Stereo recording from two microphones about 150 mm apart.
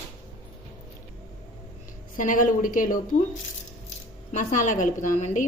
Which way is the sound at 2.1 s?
65° left (ahead or behind).